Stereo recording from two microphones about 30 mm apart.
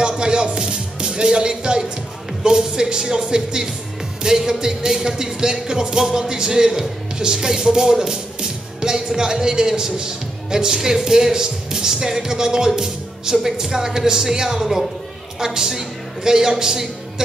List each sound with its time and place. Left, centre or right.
0.2 s music: right
1.2 s speech: right
2.4 s a woman's voice: right